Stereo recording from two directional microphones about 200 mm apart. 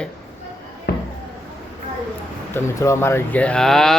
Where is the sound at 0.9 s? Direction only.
50° left (ahead or behind).